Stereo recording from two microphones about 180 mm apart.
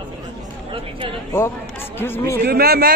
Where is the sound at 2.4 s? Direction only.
60° right (ahead or behind).